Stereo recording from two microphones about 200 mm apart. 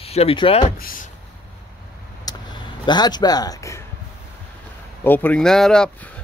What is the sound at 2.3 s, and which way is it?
Vehicle, 20° left (ahead or behind).